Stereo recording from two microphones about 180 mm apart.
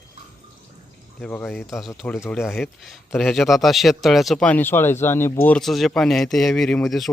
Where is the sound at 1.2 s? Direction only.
10° left (ahead or behind).